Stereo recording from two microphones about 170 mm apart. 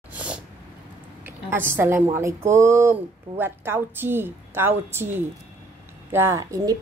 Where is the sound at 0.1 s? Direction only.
5° right (ahead or behind).